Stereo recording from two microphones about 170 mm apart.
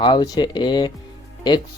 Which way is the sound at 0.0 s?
25° left (ahead or behind).